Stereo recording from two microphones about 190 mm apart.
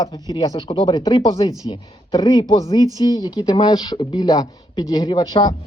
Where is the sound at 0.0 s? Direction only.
20° left (ahead or behind).